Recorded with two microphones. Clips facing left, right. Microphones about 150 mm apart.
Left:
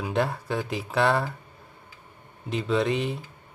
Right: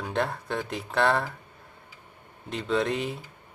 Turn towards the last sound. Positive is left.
turn(degrees=0)  # may be behind; listen again after turning